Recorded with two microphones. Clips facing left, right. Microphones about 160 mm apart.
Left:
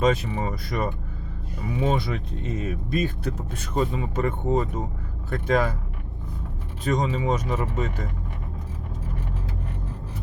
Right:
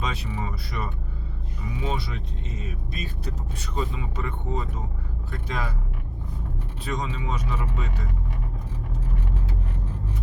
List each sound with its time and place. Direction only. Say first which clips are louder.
0.0 s speech: left 9 dB; 45° left (ahead or behind)
6.8 s speech: left 7 dB; 45° left (ahead or behind)